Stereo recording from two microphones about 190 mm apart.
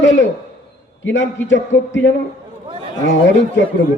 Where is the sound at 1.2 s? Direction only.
75° left (ahead or behind).